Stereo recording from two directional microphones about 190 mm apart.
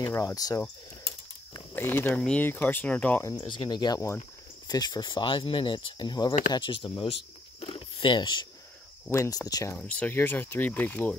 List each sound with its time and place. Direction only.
0.0 s speech: 15° left (ahead or behind)
1.5 s a sound: 20° left (ahead or behind)
1.9 s speech: 10° left (ahead or behind); by 7.2 s 25° left (ahead or behind)
7.6 s a sound: 30° left (ahead or behind)
9.1 s speech: 15° left (ahead or behind)
9.8 s speech: 10° left (ahead or behind)